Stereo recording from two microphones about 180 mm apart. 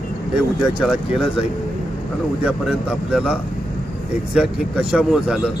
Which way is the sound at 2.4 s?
5° right (ahead or behind).